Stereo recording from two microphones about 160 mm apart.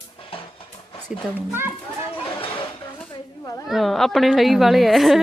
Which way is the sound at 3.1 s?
25° left (ahead or behind).